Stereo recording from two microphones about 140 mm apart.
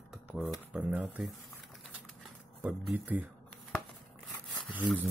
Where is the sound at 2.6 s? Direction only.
10° right (ahead or behind).